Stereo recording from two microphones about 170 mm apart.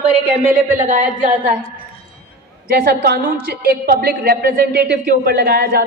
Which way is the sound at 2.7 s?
65° right (ahead or behind).